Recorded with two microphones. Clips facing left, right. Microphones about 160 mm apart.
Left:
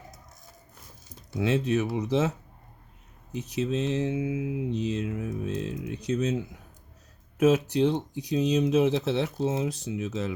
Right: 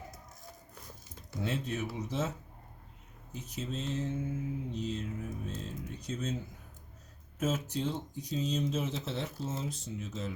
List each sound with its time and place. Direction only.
1.4 s speech: 90° left
3.3 s speech: 75° left (ahead or behind)